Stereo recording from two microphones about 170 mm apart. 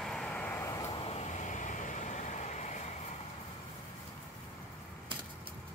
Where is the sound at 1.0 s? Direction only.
40° left (ahead or behind).